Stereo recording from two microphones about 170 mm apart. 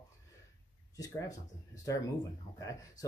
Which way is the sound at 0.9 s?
20° left (ahead or behind).